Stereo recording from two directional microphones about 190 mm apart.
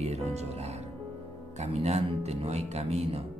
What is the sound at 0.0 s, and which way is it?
Speech, 35° right (ahead or behind).